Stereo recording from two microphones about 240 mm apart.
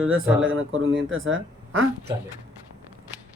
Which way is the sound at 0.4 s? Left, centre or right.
Right.